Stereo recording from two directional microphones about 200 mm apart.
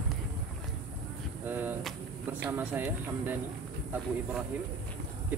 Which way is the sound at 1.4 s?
10° right (ahead or behind).